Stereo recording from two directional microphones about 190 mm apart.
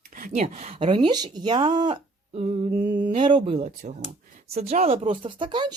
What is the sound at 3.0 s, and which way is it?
Speech, 30° right (ahead or behind).